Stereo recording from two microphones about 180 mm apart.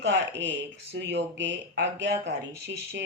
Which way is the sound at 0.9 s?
70° right (ahead or behind).